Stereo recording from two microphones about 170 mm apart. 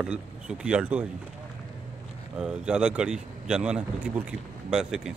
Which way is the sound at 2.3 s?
5° right (ahead or behind).